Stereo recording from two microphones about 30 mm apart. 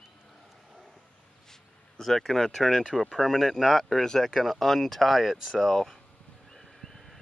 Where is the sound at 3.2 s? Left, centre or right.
Centre.